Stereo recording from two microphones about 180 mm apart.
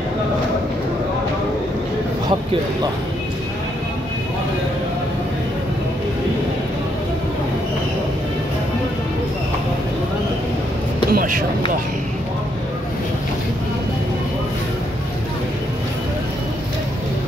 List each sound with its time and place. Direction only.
11.1 s vehicle: 55° right (ahead or behind)